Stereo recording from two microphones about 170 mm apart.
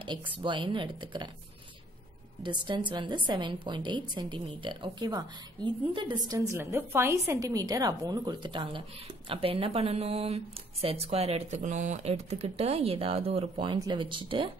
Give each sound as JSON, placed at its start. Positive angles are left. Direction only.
{"t": 0.3, "sound": "a woman's voice", "side_deg": -30}
{"t": 2.4, "sound": "a woman's voice", "side_deg": -30}